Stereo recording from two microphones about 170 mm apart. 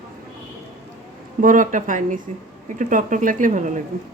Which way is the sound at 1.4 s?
50° right (ahead or behind).